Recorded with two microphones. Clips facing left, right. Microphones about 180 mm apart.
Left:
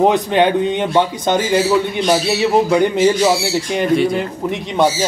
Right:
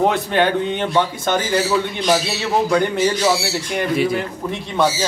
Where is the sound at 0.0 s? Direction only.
20° left (ahead or behind).